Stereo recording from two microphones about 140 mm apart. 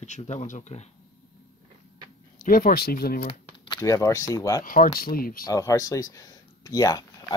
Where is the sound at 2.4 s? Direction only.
90° left.